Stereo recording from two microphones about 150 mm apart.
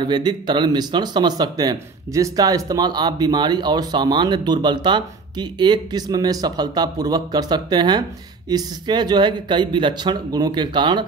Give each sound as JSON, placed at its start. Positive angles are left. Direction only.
{"t": 0.0, "sound": "speech", "side_deg": -30}